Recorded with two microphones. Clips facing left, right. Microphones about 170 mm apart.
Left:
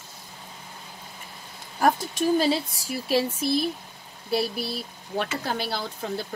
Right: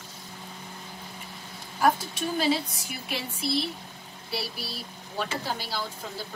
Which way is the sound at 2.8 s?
35° left (ahead or behind).